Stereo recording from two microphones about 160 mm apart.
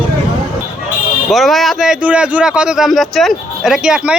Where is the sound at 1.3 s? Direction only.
Centre (ahead or behind).